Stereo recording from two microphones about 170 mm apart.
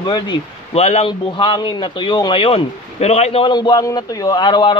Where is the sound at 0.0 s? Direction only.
30° left (ahead or behind).